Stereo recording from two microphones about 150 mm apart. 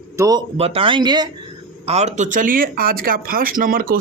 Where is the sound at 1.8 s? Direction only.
45° right (ahead or behind); by 4.0 s 75° right (ahead or behind).